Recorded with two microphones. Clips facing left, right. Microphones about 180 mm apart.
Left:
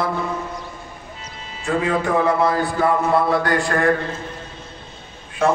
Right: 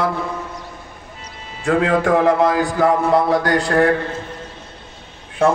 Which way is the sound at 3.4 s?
75° right (ahead or behind).